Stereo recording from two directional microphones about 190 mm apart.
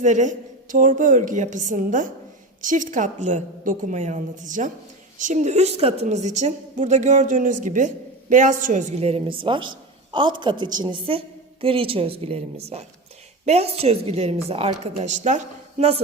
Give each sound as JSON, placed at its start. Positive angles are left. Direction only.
{"t": 0.0, "sound": "a woman's voice", "side_deg": -40}